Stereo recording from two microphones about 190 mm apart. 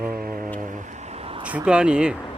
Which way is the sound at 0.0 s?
50° right (ahead or behind).